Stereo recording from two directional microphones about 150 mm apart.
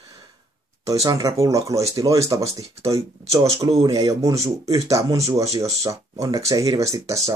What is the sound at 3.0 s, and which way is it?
Speech, 40° right (ahead or behind).